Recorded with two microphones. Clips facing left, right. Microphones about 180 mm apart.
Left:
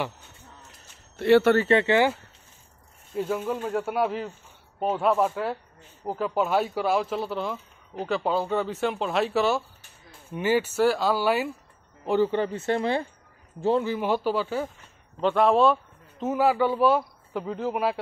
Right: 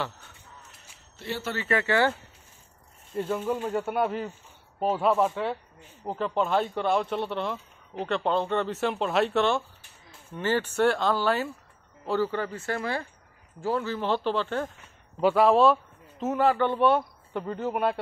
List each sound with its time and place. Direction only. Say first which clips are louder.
1.1 s speech: left 15 dB; 65° left (ahead or behind)
1.7 s speech: left 4 dB; 25° left (ahead or behind)
3.2 s speech: left 1 dB; 5° left (ahead or behind)
15.1 s a man's voice: even; 5° right (ahead or behind)